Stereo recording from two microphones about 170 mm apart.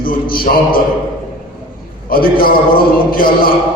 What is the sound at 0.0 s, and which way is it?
Speech, 60° left (ahead or behind).